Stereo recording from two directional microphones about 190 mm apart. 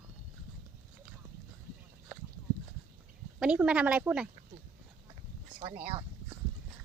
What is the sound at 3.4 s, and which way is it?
Speech, 5° right (ahead or behind).